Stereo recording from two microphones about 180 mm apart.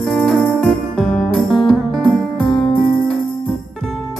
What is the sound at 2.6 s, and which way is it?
Music, 30° left (ahead or behind).